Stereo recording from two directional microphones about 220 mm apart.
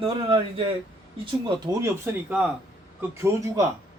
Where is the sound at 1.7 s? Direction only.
15° right (ahead or behind).